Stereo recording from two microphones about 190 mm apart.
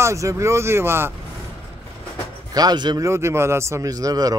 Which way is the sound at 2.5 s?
20° right (ahead or behind).